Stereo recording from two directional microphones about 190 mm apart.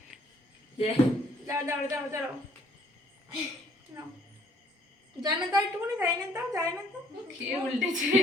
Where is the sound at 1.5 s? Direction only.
15° right (ahead or behind).